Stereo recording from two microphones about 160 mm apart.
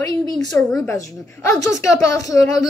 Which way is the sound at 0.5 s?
15° left (ahead or behind).